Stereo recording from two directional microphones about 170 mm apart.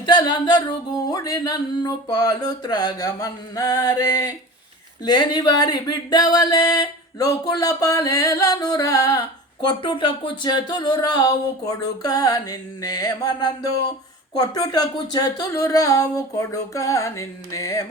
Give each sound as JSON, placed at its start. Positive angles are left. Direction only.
{"t": 0.0, "sound": "music", "side_deg": 25}
{"t": 1.1, "sound": "speech", "side_deg": 20}